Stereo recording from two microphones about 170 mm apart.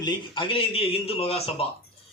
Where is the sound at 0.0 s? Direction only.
30° left (ahead or behind).